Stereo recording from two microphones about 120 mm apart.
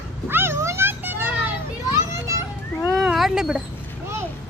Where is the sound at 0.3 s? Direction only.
20° right (ahead or behind).